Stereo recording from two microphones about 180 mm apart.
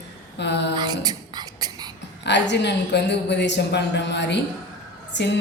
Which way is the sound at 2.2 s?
75° left (ahead or behind).